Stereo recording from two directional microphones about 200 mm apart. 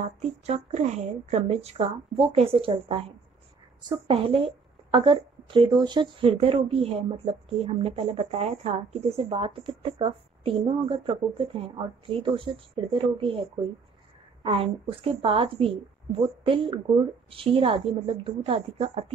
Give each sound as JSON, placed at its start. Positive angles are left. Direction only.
{"t": 0.0, "sound": "a woman's voice", "side_deg": -35}